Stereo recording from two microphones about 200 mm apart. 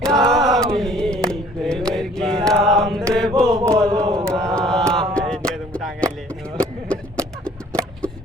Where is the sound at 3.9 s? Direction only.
20° right (ahead or behind).